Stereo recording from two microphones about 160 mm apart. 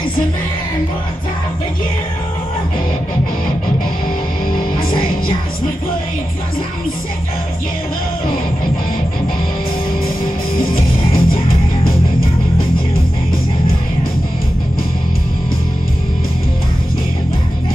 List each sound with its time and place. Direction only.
11.2 s music: 65° left (ahead or behind)